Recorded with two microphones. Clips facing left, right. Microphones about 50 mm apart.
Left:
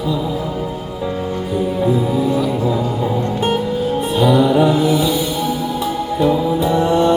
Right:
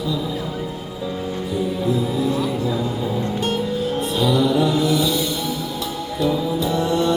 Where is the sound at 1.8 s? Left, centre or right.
Left.